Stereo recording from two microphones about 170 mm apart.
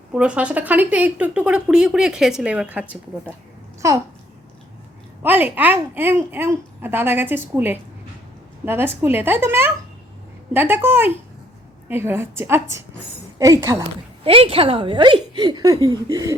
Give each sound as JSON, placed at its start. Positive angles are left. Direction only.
{"t": 0.1, "sound": "a child's voice", "side_deg": -5}
{"t": 5.2, "sound": "a woman's voice", "side_deg": -10}
{"t": 14.3, "sound": "a woman's voice", "side_deg": -30}